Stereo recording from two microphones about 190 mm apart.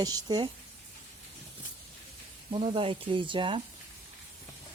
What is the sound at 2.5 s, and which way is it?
Speech, 30° right (ahead or behind).